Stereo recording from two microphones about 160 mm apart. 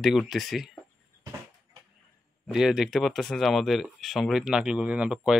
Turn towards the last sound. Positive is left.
turn(degrees=-5)  # may be behind; listen again after turning